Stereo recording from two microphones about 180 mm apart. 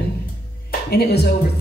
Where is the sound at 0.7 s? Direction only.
60° left (ahead or behind).